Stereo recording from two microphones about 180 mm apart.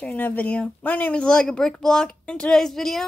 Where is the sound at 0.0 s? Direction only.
10° left (ahead or behind).